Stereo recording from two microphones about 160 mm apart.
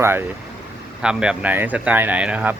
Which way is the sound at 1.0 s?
5° right (ahead or behind).